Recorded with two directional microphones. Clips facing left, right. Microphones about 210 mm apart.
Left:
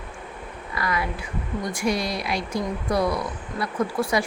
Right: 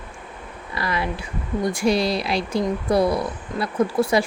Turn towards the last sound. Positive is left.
turn(degrees=-30)  # may be behind; listen again after turning